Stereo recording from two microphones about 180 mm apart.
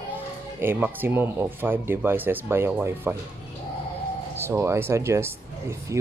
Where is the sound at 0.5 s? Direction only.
10° right (ahead or behind).